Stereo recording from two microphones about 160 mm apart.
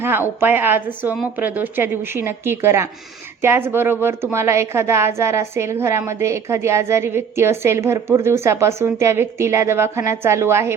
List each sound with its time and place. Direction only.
0.0 s a woman's voice: 15° right (ahead or behind)